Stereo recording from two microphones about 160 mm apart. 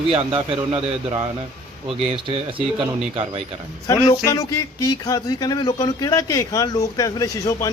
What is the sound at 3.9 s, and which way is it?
Speech, 20° left (ahead or behind).